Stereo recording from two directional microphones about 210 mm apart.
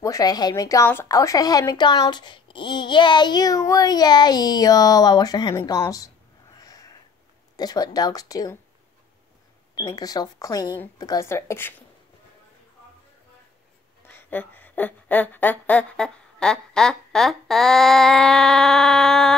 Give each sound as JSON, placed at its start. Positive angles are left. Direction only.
{"t": 0.0, "sound": "a woman's voice", "side_deg": 15}
{"t": 6.6, "sound": "sniff", "side_deg": 20}
{"t": 7.5, "sound": "speech", "side_deg": 20}
{"t": 9.8, "sound": "speech", "side_deg": 20}
{"t": 14.0, "sound": "speech", "side_deg": 10}